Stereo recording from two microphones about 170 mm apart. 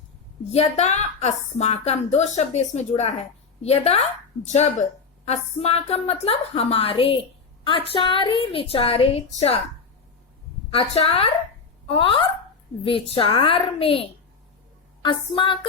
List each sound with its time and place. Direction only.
0.5 s a woman's voice: 40° left (ahead or behind)
10.7 s a woman's voice: 35° left (ahead or behind)
15.0 s music: 30° left (ahead or behind)